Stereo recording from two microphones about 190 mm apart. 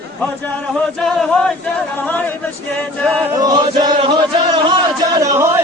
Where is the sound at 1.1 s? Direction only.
5° left (ahead or behind).